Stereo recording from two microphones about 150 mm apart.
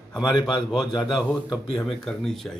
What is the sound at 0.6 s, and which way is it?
Speech, centre (ahead or behind).